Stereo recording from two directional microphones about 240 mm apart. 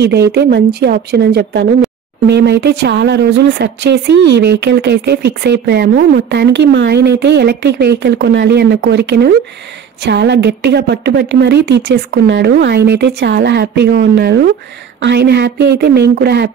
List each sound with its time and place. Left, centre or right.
0.0 s speech: right